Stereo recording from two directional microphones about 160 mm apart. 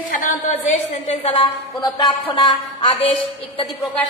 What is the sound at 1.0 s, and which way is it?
Speech, 35° left (ahead or behind).